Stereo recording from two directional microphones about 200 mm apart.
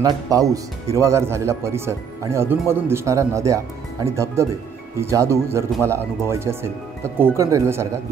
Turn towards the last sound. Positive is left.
turn(degrees=-15)  # may be behind; listen again after turning